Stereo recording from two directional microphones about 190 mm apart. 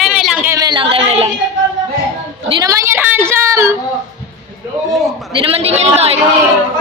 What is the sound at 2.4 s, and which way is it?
A woman's voice, 25° right (ahead or behind).